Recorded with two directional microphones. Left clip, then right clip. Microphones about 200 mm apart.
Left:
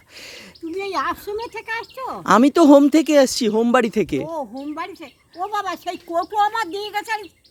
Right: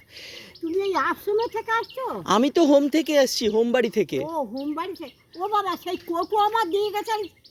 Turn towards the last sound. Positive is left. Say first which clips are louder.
# right 1 dB
turn(degrees=15)  # may be behind; listen again after turning